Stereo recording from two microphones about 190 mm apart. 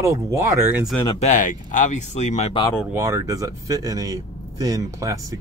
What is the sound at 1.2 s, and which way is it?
Speech, 40° left (ahead or behind).